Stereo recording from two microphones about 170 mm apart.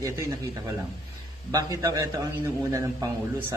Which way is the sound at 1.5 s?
20° right (ahead or behind).